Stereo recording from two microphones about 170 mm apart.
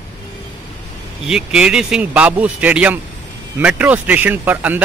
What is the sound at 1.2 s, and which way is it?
Speech, 5° right (ahead or behind).